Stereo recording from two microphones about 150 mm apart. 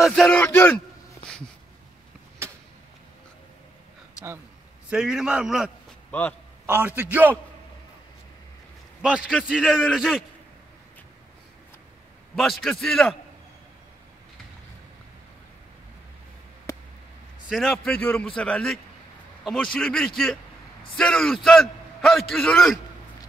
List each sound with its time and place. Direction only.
0.0 s a man's voice: centre (ahead or behind)
0.4 s speech: 15° left (ahead or behind)
2.4 s vehicle: 15° right (ahead or behind)
4.8 s a man's voice: 5° right (ahead or behind)
6.6 s a man's voice: 15° right (ahead or behind)
9.5 s a man's voice: 5° right (ahead or behind)
12.4 s a man's voice: centre (ahead or behind)
17.5 s a man's voice: centre (ahead or behind)